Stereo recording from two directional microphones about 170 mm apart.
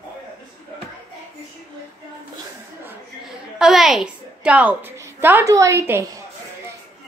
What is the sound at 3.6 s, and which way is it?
A woman's voice, centre (ahead or behind).